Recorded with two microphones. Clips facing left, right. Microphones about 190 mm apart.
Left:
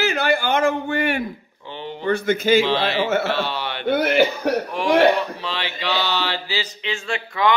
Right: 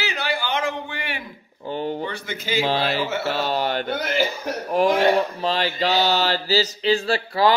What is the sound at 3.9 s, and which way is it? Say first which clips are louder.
Speech: left 6 dB; 60° left (ahead or behind).